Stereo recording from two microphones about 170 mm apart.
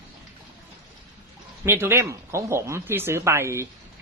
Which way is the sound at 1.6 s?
15° right (ahead or behind).